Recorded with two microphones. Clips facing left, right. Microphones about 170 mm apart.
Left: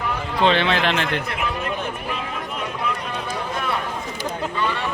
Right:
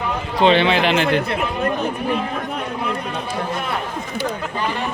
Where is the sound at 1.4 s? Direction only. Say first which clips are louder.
Right 5 dB; 40° right (ahead or behind).